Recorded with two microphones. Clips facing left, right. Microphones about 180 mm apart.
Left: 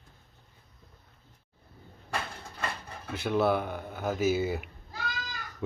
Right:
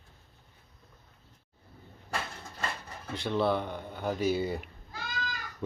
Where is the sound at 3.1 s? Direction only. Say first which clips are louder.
Left 2 dB; 5° left (ahead or behind).